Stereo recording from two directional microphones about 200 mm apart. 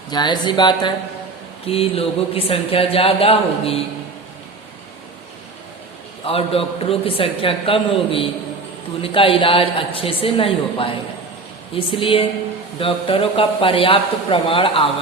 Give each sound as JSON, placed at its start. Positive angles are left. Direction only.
{"t": 0.1, "sound": "speech", "side_deg": 20}
{"t": 6.2, "sound": "speech", "side_deg": 30}